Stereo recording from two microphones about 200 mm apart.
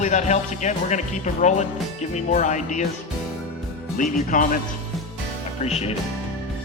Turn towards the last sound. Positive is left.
turn(degrees=30)  # may be behind; listen again after turning